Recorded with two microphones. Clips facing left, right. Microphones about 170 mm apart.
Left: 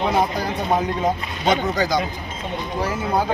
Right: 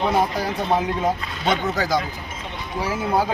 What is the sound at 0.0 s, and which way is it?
Speech, centre (ahead or behind).